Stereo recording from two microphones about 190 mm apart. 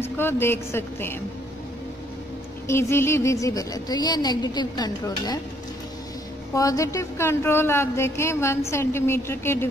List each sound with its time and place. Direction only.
0.0 s speech: 10° left (ahead or behind)
2.7 s a woman's voice: 15° left (ahead or behind)
6.5 s speech: 15° left (ahead or behind)